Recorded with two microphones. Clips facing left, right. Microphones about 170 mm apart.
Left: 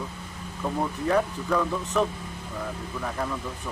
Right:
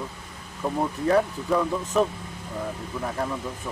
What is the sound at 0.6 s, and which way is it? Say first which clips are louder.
Speech: right 2 dB; 10° right (ahead or behind).